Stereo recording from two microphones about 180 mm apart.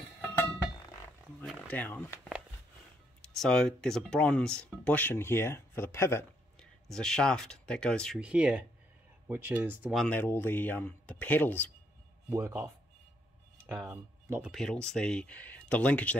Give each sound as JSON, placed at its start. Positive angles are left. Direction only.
{"t": 1.4, "sound": "a sound", "side_deg": 5}
{"t": 3.2, "sound": "speech", "side_deg": 5}
{"t": 10.0, "sound": "speech", "side_deg": 10}
{"t": 12.3, "sound": "speech", "side_deg": -15}
{"t": 14.5, "sound": "speech", "side_deg": 5}